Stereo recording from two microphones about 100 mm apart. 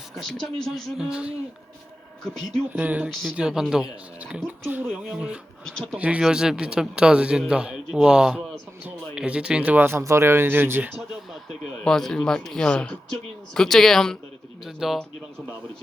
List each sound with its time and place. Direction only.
0.2 s speech: 5° left (ahead or behind)
1.0 s speech: 10° right (ahead or behind)
2.7 s speech: 15° right (ahead or behind)
3.3 s speech: 5° right (ahead or behind)
4.2 s speech: 15° right (ahead or behind)
5.6 s speech: 5° left (ahead or behind)
6.0 s speech: 15° right (ahead or behind)
8.8 s speech: 10° right (ahead or behind)
11.3 s speech: centre (ahead or behind)